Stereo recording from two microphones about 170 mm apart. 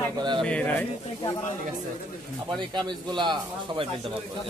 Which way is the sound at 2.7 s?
25° right (ahead or behind).